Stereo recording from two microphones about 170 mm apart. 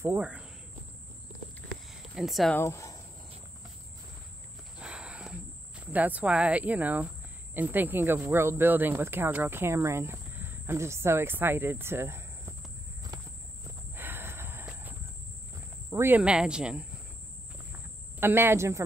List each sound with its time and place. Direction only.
0.0 s speech: 10° right (ahead or behind)
1.9 s a sound: centre (ahead or behind)
2.5 s speech: 15° left (ahead or behind)
4.7 s a sound: 5° right (ahead or behind)
7.5 s speech: 10° right (ahead or behind)
13.7 s walk: 10° right (ahead or behind)
14.7 s cricket: 10° right (ahead or behind)
15.9 s speech: 15° right (ahead or behind)
17.7 s cricket: 10° right (ahead or behind)